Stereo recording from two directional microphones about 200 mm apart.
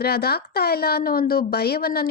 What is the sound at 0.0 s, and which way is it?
Speech, 50° left (ahead or behind).